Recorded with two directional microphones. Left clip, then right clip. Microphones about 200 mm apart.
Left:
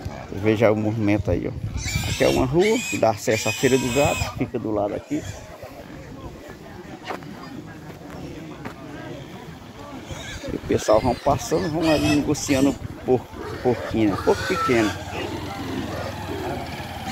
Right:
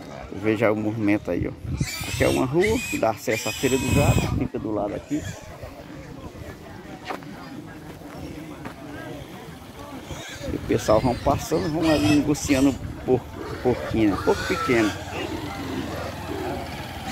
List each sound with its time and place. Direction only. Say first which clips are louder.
0.4 s speech: left 3 dB; 5° left (ahead or behind)
1.8 s neigh: left 3 dB; 15° right (ahead or behind)
2.1 s speech: left 2 dB; centre (ahead or behind)
2.5 s speech: left 2 dB; 15° right (ahead or behind)
3.0 s speech: left 3 dB; 10° left (ahead or behind)
4.6 s speech: left 3 dB; 5° left (ahead or behind)
10.7 s speech: left 2 dB; centre (ahead or behind)